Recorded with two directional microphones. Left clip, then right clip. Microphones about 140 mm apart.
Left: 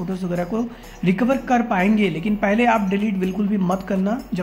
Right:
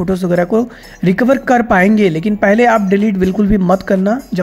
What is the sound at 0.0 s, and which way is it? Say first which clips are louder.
Speech: right 11 dB; 60° right (ahead or behind).